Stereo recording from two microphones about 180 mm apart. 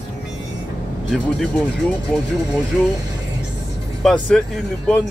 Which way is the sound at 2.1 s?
5° left (ahead or behind).